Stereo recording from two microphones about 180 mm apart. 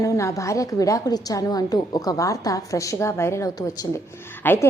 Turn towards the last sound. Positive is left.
turn(degrees=10)  # may be behind; listen again after turning